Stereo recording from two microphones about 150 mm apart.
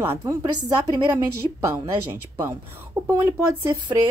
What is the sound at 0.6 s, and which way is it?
A woman's voice, 25° right (ahead or behind).